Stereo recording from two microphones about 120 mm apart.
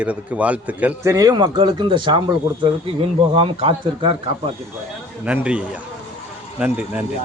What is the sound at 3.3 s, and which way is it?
Speech, 50° right (ahead or behind).